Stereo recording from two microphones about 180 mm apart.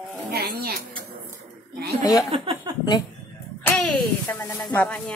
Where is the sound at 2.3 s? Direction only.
30° right (ahead or behind).